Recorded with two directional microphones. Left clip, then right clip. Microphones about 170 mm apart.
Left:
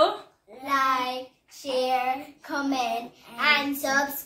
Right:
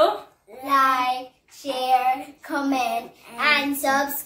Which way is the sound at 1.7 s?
10° left (ahead or behind).